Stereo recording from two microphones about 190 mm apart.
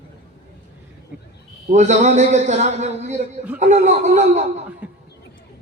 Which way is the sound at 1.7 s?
35° right (ahead or behind).